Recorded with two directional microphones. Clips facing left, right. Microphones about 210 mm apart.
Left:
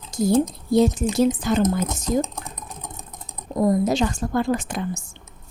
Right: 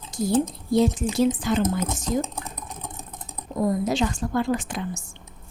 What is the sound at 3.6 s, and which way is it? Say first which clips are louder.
A woman's voice: left 3 dB; 40° left (ahead or behind).